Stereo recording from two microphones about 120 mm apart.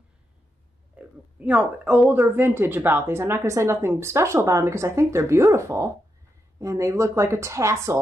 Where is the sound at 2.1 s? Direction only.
20° right (ahead or behind).